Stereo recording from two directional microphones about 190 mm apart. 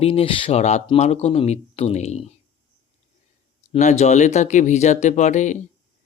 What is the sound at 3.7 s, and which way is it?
Speech, 35° left (ahead or behind).